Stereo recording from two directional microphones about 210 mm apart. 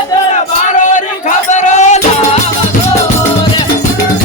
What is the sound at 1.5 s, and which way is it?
Music, 35° left (ahead or behind).